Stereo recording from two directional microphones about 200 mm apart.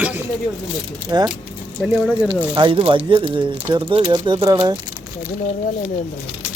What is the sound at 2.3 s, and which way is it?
Speech, 25° right (ahead or behind).